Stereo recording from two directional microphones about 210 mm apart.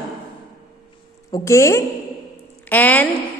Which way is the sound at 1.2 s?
15° left (ahead or behind).